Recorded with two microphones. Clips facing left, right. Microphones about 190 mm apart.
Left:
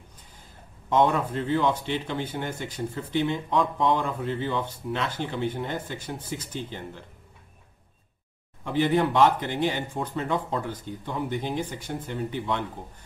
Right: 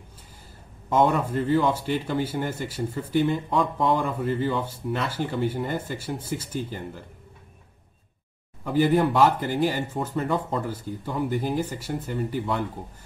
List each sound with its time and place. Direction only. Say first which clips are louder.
0.8 s speech: right 1 dB; 5° right (ahead or behind)
8.6 s speech: right 2 dB; 5° right (ahead or behind)